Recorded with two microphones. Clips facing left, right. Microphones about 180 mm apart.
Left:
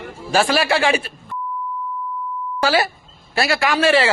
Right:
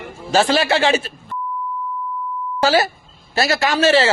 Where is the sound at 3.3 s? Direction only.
40° right (ahead or behind).